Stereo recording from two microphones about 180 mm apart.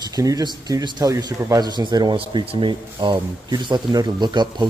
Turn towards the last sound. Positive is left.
turn(degrees=-25)  # may be behind; listen again after turning